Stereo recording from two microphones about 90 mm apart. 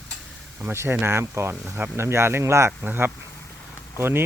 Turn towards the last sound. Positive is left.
turn(degrees=-25)  # may be behind; listen again after turning